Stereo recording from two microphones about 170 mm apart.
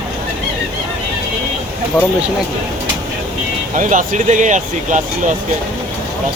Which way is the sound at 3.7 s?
50° right (ahead or behind).